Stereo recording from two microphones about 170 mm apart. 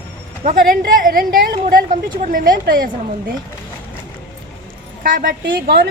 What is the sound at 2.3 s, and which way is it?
Speech, 55° right (ahead or behind).